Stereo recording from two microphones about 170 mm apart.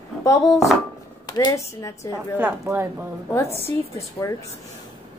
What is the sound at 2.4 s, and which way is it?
Speech, 15° right (ahead or behind).